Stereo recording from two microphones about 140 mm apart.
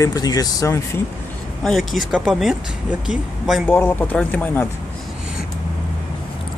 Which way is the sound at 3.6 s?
15° left (ahead or behind).